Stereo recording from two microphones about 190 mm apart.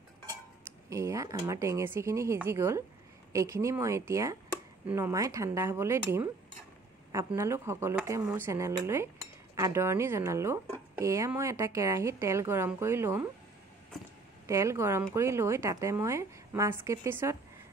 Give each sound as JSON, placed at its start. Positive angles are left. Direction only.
{"t": 0.8, "sound": "speech", "side_deg": -15}
{"t": 7.3, "sound": "speech", "side_deg": -15}
{"t": 14.4, "sound": "speech", "side_deg": -15}